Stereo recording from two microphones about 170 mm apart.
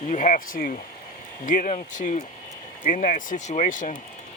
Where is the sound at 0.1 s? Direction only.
50° left (ahead or behind).